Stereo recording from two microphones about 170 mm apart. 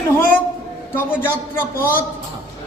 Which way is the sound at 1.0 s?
10° left (ahead or behind).